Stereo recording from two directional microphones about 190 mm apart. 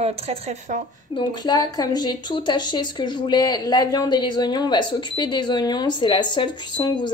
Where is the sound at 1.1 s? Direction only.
20° left (ahead or behind).